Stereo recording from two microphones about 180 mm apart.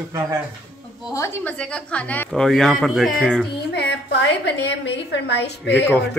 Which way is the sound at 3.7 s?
70° left (ahead or behind).